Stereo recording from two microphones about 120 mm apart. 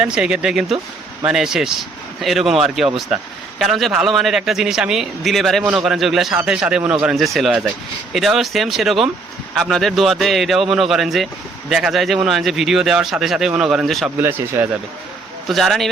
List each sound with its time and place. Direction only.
0.0 s a man's voice: 5° right (ahead or behind)
14.2 s a man's voice: 20° right (ahead or behind)
15.4 s a man's voice: centre (ahead or behind)